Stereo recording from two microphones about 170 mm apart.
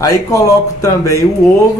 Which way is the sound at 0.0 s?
20° left (ahead or behind).